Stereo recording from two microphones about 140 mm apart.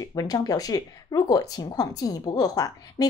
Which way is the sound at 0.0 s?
25° left (ahead or behind).